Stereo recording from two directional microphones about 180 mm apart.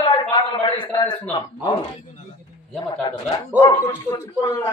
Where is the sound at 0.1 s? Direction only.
25° left (ahead or behind).